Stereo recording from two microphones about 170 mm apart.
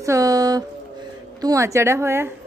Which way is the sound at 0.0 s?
20° right (ahead or behind).